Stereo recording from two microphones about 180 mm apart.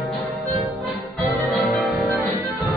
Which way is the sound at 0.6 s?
Centre (ahead or behind).